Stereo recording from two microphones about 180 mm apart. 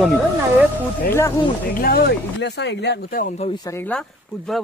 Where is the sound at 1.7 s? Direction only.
55° left (ahead or behind).